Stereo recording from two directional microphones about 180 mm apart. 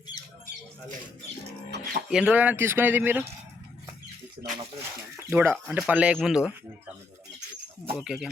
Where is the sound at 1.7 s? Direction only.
70° right (ahead or behind).